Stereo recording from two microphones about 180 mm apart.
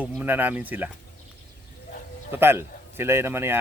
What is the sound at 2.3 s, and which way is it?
A man's voice, 15° right (ahead or behind).